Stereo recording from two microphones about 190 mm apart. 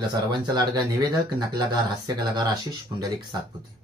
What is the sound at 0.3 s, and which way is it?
Speech, 20° right (ahead or behind).